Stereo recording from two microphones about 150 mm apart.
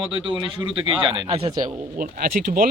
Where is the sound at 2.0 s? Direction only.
70° right (ahead or behind).